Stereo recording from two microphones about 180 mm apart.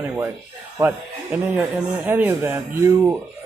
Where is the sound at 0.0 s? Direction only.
10° right (ahead or behind).